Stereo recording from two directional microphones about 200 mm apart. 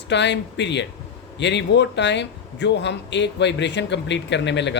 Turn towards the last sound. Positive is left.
turn(degrees=60)  # may be behind; listen again after turning